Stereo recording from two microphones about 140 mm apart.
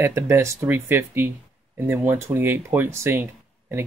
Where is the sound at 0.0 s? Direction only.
20° right (ahead or behind).